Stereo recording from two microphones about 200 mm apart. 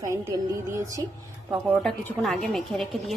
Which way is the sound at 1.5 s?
Centre (ahead or behind).